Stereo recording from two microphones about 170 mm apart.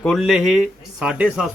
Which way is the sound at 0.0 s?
Centre (ahead or behind).